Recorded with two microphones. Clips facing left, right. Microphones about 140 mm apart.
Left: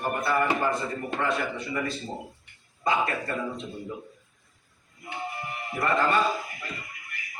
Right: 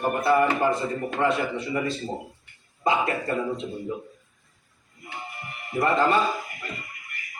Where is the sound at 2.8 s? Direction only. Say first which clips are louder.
Right 2 dB; 25° right (ahead or behind).